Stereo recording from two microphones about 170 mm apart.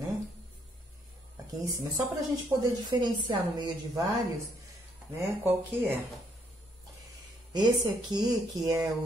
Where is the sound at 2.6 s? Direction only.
25° right (ahead or behind).